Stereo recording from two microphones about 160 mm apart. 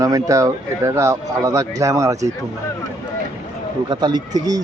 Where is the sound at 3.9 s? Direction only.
25° right (ahead or behind).